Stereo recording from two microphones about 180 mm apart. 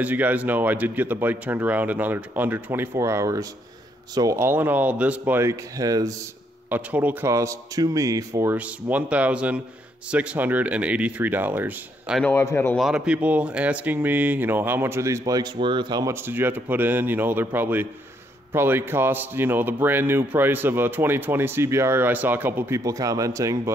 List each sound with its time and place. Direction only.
0.0 s speech: 10° right (ahead or behind)
6.7 s speech: 10° right (ahead or behind)
12.2 s a man's voice: 10° left (ahead or behind)
12.7 s speech: 5° right (ahead or behind)